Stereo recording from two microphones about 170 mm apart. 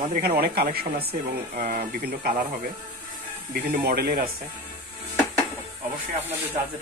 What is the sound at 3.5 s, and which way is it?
Speech, 65° right (ahead or behind).